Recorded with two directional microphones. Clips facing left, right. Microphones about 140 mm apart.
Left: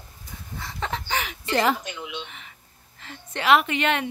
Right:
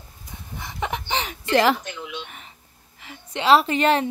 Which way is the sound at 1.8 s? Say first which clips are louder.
Right 1 dB; 15° left (ahead or behind).